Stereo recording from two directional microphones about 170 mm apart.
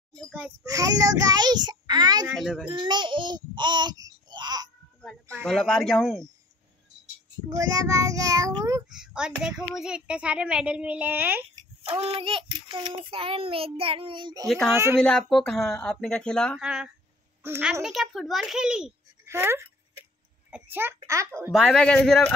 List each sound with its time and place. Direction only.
0.7 s a child's voice: 20° right (ahead or behind)
2.2 s a child's voice: centre (ahead or behind)
2.7 s speech: 25° right (ahead or behind)
5.4 s a child's voice: 5° left (ahead or behind)
7.4 s a child's voice: 20° right (ahead or behind)
8.8 s a child's voice: 5° right (ahead or behind)
11.5 s child singing: 30° right (ahead or behind)
14.7 s a child's voice: 15° right (ahead or behind)
15.0 s a child's voice: 5° left (ahead or behind); by 21.5 s 15° right (ahead or behind)
21.5 s a child's voice: 5° left (ahead or behind)